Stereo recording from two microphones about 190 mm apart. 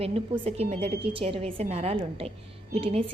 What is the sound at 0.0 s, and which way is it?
A woman's voice, 30° right (ahead or behind).